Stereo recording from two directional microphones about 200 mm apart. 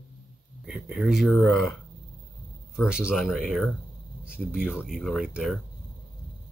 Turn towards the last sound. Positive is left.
turn(degrees=0)  # may be behind; listen again after turning